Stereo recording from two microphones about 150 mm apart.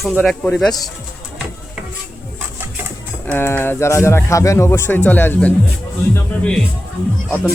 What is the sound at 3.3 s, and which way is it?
Speech, 15° left (ahead or behind).